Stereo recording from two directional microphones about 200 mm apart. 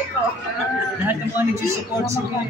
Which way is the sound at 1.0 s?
10° right (ahead or behind).